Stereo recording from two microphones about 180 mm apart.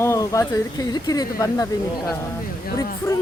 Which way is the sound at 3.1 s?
15° left (ahead or behind).